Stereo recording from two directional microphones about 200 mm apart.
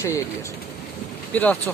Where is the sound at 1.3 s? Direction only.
5° left (ahead or behind).